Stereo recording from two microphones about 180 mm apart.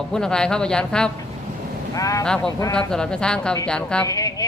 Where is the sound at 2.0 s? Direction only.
20° left (ahead or behind).